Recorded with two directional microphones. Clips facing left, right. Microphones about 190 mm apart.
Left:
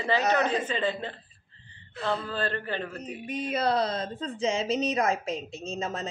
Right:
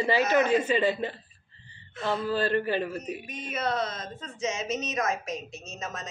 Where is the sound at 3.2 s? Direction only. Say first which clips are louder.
Left 8 dB; 30° left (ahead or behind).